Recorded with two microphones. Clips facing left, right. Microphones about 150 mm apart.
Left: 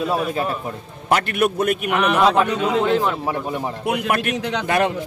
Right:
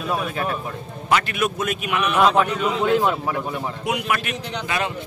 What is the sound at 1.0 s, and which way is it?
A man's voice, 55° left (ahead or behind).